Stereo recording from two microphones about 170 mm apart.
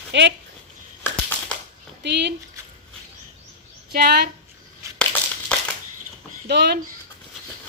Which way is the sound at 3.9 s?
70° right (ahead or behind).